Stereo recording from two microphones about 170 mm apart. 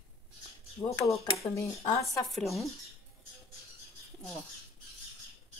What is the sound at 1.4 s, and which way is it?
Speech, 20° left (ahead or behind).